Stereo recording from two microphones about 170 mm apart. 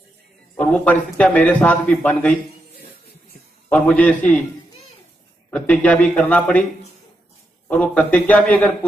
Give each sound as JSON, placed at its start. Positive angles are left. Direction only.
{"t": 0.6, "sound": "a man's voice", "side_deg": 10}
{"t": 3.6, "sound": "a man's voice", "side_deg": 10}
{"t": 5.5, "sound": "a man's voice", "side_deg": 10}
{"t": 7.7, "sound": "a man's voice", "side_deg": 5}